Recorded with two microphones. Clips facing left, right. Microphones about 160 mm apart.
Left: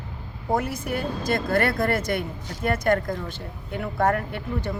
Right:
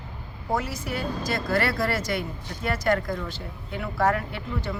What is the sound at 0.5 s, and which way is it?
Speech, 55° left (ahead or behind).